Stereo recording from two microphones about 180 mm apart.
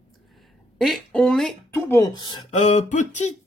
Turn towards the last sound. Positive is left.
turn(degrees=40)  # may be behind; listen again after turning